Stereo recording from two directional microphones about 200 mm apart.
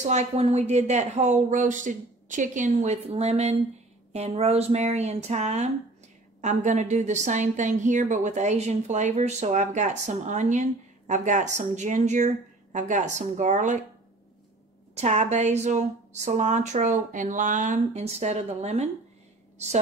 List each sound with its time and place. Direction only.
0.1 s a woman's voice: 35° right (ahead or behind)
15.0 s a woman's voice: 35° right (ahead or behind)